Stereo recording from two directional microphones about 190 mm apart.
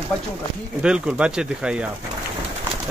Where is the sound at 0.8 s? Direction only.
5° right (ahead or behind).